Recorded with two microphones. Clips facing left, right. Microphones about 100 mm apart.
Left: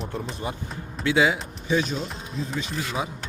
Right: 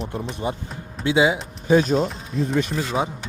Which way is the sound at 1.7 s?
45° right (ahead or behind).